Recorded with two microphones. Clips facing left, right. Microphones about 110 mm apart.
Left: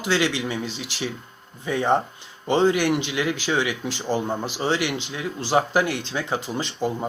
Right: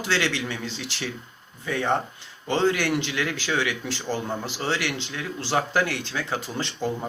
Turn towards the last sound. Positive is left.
turn(degrees=15)  # may be behind; listen again after turning